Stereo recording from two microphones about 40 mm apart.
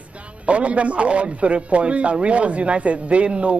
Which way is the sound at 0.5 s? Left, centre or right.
Right.